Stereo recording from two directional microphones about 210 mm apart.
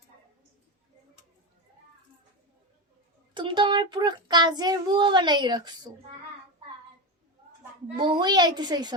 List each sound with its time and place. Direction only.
3.3 s child singing: 20° right (ahead or behind)
7.9 s child singing: 20° right (ahead or behind)